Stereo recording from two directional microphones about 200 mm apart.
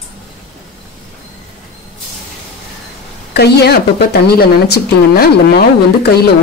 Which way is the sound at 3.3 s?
55° left (ahead or behind).